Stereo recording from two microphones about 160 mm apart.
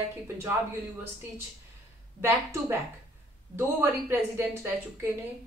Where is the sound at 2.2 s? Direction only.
15° right (ahead or behind).